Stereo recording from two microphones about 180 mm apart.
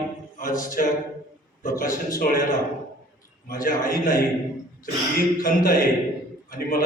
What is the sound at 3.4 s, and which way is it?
Speech, 50° left (ahead or behind).